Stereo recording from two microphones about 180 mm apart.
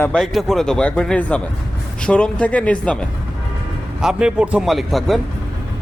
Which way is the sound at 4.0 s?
5° right (ahead or behind).